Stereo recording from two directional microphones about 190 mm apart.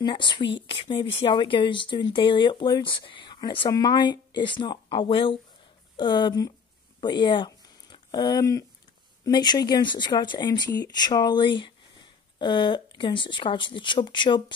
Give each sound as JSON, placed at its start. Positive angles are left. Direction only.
{"t": 0.0, "sound": "speech", "side_deg": 25}